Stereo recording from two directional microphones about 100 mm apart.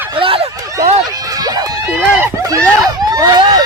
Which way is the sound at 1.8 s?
15° right (ahead or behind).